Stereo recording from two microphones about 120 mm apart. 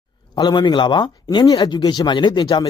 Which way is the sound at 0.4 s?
40° left (ahead or behind).